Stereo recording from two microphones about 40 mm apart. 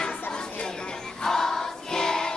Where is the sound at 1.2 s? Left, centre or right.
Centre.